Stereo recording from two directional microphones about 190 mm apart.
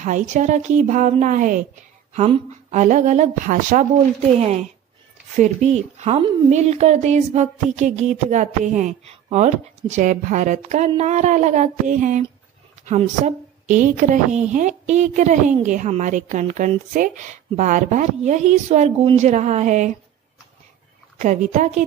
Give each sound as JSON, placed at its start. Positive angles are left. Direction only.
{"t": 0.0, "sound": "a woman's voice", "side_deg": -40}
{"t": 2.1, "sound": "a woman's voice", "side_deg": -35}
{"t": 21.2, "sound": "a woman's voice", "side_deg": -40}